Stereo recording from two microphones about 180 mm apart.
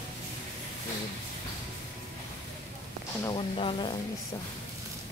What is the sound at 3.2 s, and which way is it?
Speech, 30° left (ahead or behind).